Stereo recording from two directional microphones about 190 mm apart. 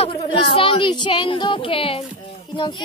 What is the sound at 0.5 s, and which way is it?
Speech, 30° left (ahead or behind).